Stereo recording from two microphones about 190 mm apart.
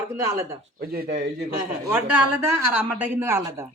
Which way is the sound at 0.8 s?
55° right (ahead or behind).